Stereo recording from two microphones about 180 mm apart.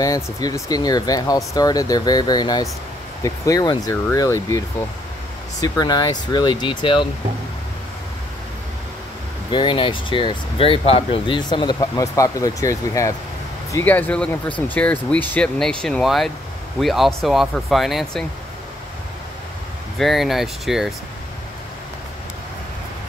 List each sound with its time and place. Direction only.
0.0 s speech: 20° left (ahead or behind)
9.5 s speech: 25° left (ahead or behind); by 18.2 s centre (ahead or behind)
20.0 s speech: centre (ahead or behind)